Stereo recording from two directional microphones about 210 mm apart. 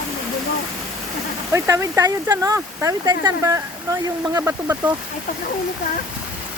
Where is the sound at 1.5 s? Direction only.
15° right (ahead or behind).